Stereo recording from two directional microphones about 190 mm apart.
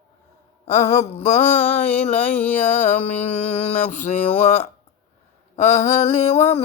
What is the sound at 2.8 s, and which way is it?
Mantra, 40° left (ahead or behind).